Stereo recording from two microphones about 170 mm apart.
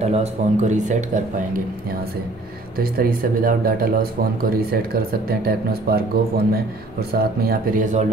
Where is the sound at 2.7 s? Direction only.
60° right (ahead or behind).